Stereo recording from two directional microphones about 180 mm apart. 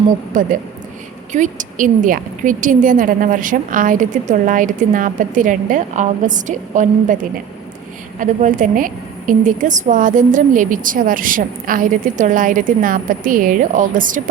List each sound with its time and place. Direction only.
0.3 s a woman's voice: 45° right (ahead or behind)
8.2 s a woman's voice: 45° right (ahead or behind)